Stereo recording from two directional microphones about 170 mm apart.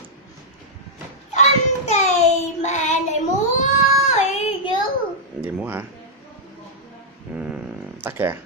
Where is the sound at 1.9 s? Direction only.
40° left (ahead or behind).